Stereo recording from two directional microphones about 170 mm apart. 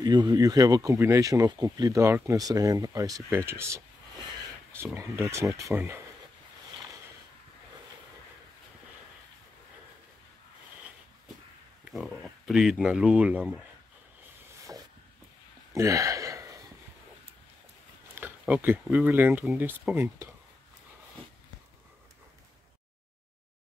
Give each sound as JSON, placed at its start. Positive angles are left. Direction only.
{"t": 0.0, "sound": "speech", "side_deg": -25}
{"t": 11.8, "sound": "speech", "side_deg": 0}
{"t": 15.7, "sound": "gasp", "side_deg": -20}
{"t": 18.1, "sound": "speech", "side_deg": -10}